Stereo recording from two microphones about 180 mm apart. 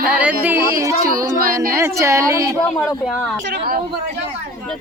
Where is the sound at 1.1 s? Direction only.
50° right (ahead or behind).